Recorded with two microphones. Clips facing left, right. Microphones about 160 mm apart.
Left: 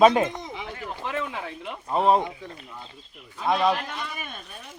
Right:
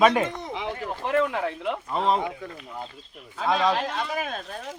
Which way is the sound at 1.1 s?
60° right (ahead or behind).